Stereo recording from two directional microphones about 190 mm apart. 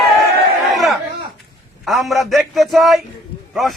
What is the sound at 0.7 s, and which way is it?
A man's voice, centre (ahead or behind).